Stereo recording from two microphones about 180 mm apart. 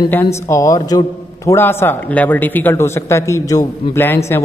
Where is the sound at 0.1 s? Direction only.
15° left (ahead or behind).